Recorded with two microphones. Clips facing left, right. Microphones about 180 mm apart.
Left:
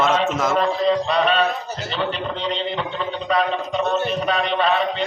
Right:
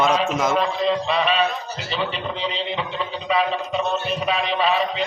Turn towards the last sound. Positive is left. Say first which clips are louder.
# left 1 dB
turn(degrees=-5)  # may be behind; listen again after turning